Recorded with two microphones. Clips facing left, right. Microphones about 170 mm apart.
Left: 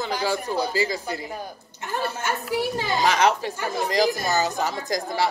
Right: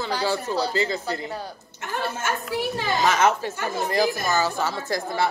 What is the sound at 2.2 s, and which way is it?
Speech, 15° left (ahead or behind).